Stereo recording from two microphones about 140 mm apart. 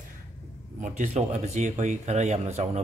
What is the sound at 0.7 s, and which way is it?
Speech, 60° right (ahead or behind).